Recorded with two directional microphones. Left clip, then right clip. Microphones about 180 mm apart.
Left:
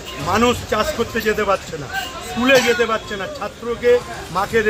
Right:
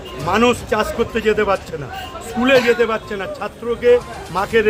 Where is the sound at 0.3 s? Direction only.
20° right (ahead or behind).